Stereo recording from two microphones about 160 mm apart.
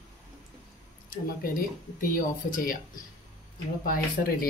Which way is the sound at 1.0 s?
60° left (ahead or behind).